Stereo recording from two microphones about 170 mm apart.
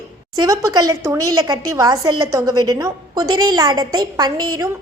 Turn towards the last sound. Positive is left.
turn(degrees=-25)  # may be behind; listen again after turning